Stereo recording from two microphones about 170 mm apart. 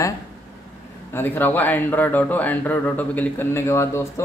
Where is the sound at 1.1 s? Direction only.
10° left (ahead or behind).